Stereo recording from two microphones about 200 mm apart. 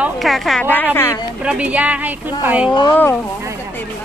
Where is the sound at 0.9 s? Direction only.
10° left (ahead or behind).